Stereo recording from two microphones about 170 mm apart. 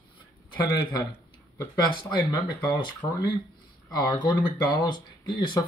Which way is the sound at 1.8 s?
25° left (ahead or behind).